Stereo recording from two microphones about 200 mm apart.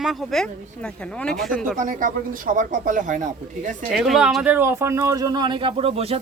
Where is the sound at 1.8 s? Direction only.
40° right (ahead or behind).